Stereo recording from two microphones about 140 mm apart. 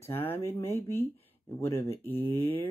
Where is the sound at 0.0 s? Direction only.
15° left (ahead or behind).